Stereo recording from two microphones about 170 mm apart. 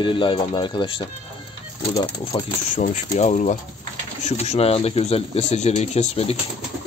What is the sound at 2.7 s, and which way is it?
Speech, 45° left (ahead or behind).